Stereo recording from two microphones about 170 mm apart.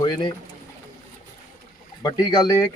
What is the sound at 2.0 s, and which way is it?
Speech, 25° left (ahead or behind).